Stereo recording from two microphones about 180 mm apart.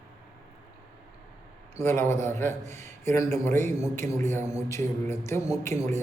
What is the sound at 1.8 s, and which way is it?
A man's voice, 15° left (ahead or behind).